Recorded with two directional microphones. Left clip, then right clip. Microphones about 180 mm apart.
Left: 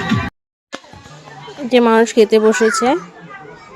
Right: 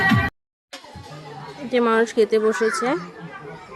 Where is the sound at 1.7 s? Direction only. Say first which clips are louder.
Left 7 dB; 20° left (ahead or behind).